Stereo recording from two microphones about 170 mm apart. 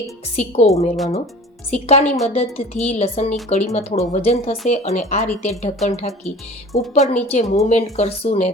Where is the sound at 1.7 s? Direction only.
40° left (ahead or behind).